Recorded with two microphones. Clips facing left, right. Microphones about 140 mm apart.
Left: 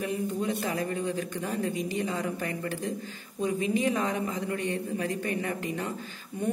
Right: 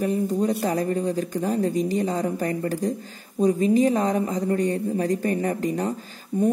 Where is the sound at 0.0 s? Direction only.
40° right (ahead or behind).